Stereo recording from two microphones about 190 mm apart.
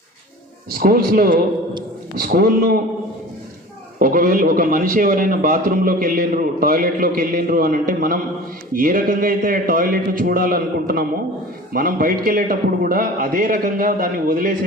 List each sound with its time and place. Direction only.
0.7 s a man's voice: 50° right (ahead or behind)
4.0 s a man's voice: 45° right (ahead or behind)